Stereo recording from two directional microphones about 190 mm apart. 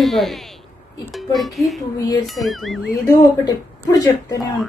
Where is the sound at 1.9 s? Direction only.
20° left (ahead or behind).